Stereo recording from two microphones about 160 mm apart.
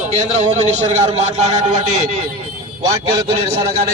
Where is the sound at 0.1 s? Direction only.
45° right (ahead or behind).